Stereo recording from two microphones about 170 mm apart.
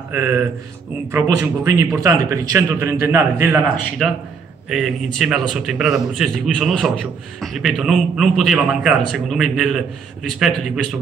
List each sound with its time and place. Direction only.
0.1 s a man's voice: 15° right (ahead or behind)
4.0 s a man's voice: centre (ahead or behind)